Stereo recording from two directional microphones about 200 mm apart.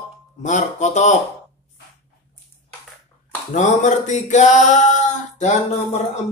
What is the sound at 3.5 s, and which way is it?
Speech, 40° left (ahead or behind).